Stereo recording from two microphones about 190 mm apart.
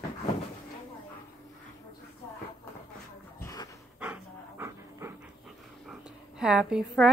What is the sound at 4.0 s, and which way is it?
Dog, 10° right (ahead or behind).